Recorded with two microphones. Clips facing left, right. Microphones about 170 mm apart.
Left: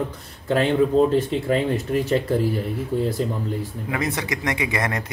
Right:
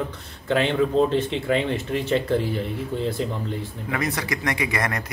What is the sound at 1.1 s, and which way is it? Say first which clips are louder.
Speech: left 2 dB; 40° left (ahead or behind).